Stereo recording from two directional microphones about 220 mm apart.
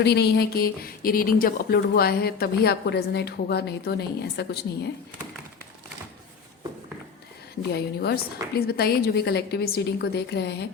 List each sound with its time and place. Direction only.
0.0 s speech: 50° left (ahead or behind)
7.7 s speech: 45° left (ahead or behind)